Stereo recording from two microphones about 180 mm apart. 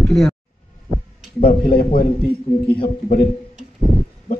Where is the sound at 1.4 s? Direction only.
55° left (ahead or behind).